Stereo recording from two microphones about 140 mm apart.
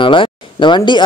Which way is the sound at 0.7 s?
35° left (ahead or behind).